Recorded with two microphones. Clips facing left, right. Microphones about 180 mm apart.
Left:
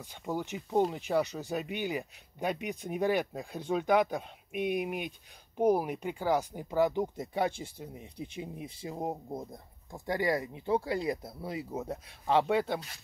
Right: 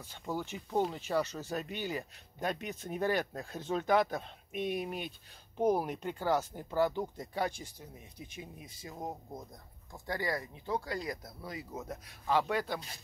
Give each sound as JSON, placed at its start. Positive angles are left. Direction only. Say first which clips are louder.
{"t": 0.0, "sound": "speech", "louder": "left 3 dB", "side_deg": 15}